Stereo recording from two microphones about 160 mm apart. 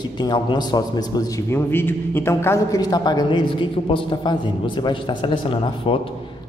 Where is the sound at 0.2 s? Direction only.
25° left (ahead or behind).